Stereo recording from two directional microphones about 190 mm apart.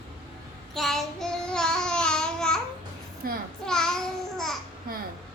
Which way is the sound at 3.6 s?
5° left (ahead or behind).